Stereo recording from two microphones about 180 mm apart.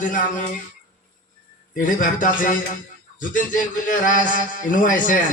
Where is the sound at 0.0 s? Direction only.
45° left (ahead or behind).